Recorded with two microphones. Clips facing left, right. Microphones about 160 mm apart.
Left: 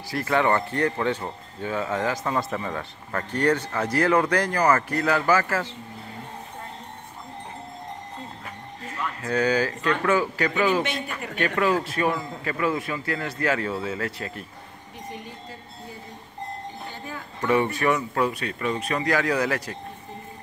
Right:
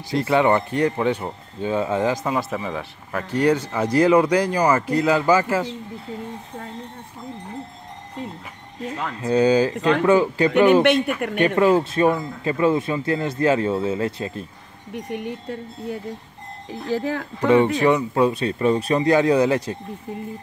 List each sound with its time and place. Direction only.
0.1 s speech: 20° right (ahead or behind)
9.2 s speech: 20° right (ahead or behind)
10.7 s speech: 65° right (ahead or behind)
11.3 s speech: 20° right (ahead or behind)
15.0 s speech: 65° right (ahead or behind)
16.6 s speech: 90° right
17.5 s speech: 20° right (ahead or behind)